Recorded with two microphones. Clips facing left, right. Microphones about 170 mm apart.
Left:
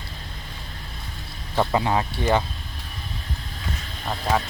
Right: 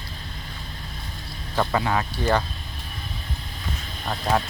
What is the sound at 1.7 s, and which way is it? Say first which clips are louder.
Speech: left 2 dB; 20° left (ahead or behind).